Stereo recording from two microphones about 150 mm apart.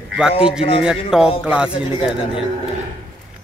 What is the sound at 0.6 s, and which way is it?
Speech, 40° left (ahead or behind).